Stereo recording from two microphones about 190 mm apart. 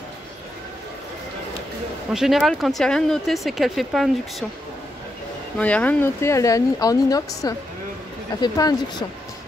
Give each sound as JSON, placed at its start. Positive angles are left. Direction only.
{"t": 2.1, "sound": "speech", "side_deg": 0}
{"t": 5.6, "sound": "speech", "side_deg": 5}